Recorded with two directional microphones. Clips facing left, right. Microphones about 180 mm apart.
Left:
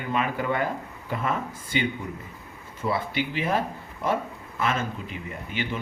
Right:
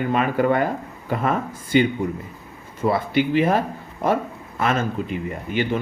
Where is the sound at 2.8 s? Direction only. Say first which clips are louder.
Right 7 dB; 45° right (ahead or behind).